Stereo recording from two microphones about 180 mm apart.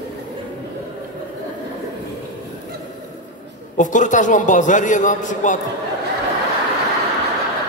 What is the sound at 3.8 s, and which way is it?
A man's voice, 45° left (ahead or behind).